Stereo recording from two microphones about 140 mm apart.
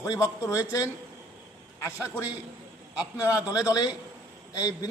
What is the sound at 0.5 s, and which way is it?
Speech, 25° left (ahead or behind).